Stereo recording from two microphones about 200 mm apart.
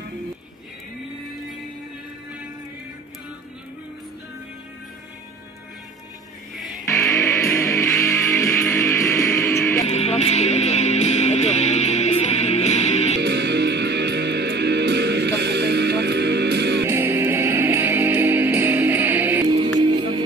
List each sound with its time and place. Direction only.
6.5 s music: centre (ahead or behind)
6.9 s music: 15° left (ahead or behind)
9.8 s music: 35° left (ahead or behind)
13.2 s music: 60° right (ahead or behind)
16.8 s music: 10° right (ahead or behind)
19.8 s music: 20° right (ahead or behind)